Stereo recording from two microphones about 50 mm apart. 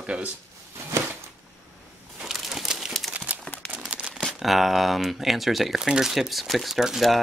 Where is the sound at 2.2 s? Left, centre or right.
Centre.